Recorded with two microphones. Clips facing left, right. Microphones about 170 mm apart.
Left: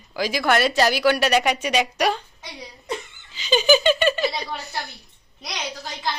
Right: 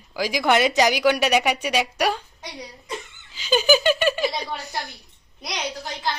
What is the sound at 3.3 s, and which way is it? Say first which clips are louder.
Speech: left 1 dB; 10° right (ahead or behind).